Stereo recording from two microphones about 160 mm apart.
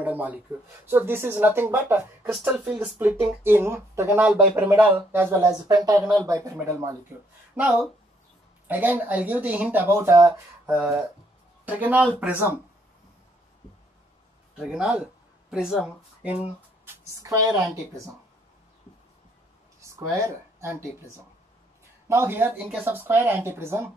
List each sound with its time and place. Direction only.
0.0 s a sound: 10° right (ahead or behind)
0.8 s speech: 15° right (ahead or behind)
7.5 s speech: centre (ahead or behind)
14.6 s speech: 5° right (ahead or behind)
16.8 s a sound: 15° right (ahead or behind)
19.8 s speech: 20° right (ahead or behind)
22.0 s speech: 15° right (ahead or behind)